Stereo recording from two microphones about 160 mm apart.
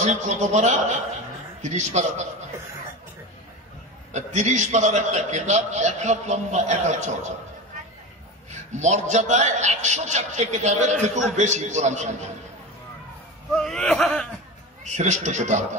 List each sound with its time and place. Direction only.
0.0 s a man's voice: 45° right (ahead or behind)
4.1 s a man's voice: 45° right (ahead or behind)
8.5 s a man's voice: 45° right (ahead or behind)
13.6 s speech: 5° left (ahead or behind)
14.9 s a man's voice: 45° right (ahead or behind)